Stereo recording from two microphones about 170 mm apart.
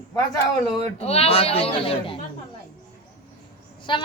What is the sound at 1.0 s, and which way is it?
Speech, 35° left (ahead or behind).